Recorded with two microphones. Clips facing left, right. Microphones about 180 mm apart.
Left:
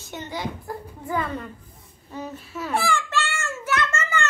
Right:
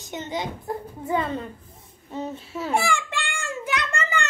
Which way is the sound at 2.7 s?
15° right (ahead or behind).